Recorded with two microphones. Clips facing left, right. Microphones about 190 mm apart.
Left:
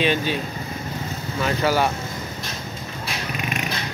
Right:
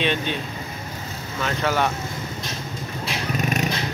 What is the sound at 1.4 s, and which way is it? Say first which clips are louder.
Speech: left 2 dB; 5° left (ahead or behind).